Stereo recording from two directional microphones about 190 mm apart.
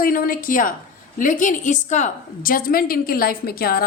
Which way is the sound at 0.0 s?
45° left (ahead or behind).